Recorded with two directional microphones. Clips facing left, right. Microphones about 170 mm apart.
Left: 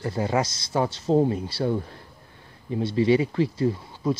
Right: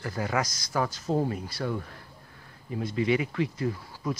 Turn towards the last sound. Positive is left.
turn(degrees=25)  # may be behind; listen again after turning